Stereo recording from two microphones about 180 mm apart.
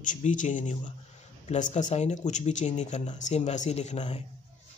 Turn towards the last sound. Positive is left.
turn(degrees=40)  # may be behind; listen again after turning